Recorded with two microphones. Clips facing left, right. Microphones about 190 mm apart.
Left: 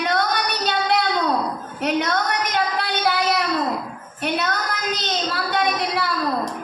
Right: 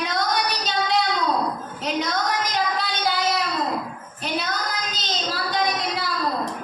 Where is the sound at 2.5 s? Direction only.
60° left (ahead or behind).